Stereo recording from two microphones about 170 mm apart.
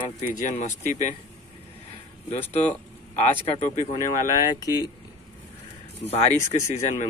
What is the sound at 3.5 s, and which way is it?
Speech, 40° left (ahead or behind).